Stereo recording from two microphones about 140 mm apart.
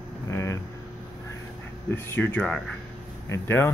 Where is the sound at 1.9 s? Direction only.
15° left (ahead or behind).